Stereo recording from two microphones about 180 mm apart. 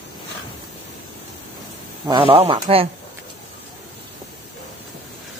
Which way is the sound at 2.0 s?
30° right (ahead or behind).